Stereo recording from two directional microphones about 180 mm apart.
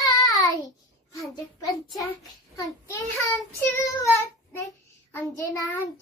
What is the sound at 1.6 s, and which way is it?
Child singing, 20° left (ahead or behind).